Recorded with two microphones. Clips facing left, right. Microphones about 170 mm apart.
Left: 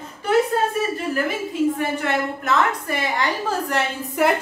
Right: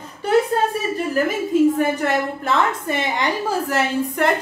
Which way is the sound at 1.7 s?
40° right (ahead or behind).